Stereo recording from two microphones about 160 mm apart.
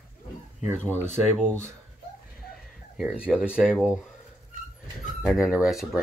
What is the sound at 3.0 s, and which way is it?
Speech, 5° right (ahead or behind).